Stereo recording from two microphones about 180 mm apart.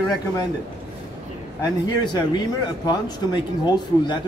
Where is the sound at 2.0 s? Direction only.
25° left (ahead or behind).